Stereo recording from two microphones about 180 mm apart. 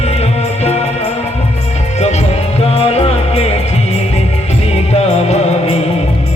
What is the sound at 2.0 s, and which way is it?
Music, 35° left (ahead or behind).